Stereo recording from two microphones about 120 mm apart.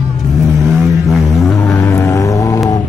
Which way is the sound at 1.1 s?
Centre (ahead or behind).